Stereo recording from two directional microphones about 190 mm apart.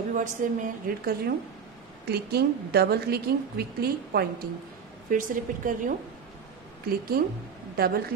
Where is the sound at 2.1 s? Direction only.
55° right (ahead or behind).